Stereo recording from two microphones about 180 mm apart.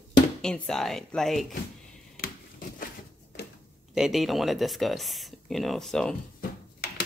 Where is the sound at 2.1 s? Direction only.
55° left (ahead or behind).